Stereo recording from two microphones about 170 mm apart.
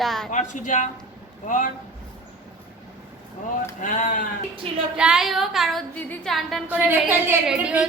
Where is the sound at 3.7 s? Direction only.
50° left (ahead or behind).